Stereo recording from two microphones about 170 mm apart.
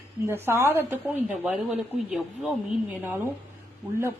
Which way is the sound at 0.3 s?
15° right (ahead or behind).